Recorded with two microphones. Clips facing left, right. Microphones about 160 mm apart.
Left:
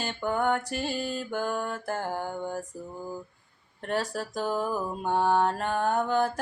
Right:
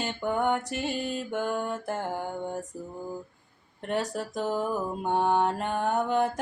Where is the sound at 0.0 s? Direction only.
20° right (ahead or behind).